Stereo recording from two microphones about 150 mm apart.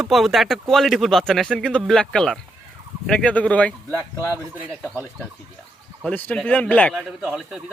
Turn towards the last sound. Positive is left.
turn(degrees=-5)  # may be behind; listen again after turning